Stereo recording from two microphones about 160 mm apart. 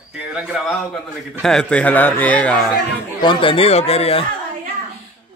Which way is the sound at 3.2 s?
35° left (ahead or behind).